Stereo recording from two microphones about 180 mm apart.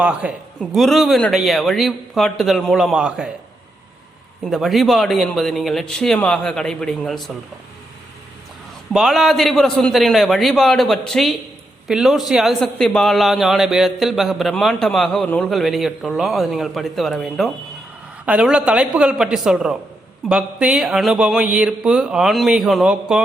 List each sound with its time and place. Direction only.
0.0 s a man's voice: 5° right (ahead or behind)
4.4 s a man's voice: centre (ahead or behind)
8.9 s a man's voice: centre (ahead or behind)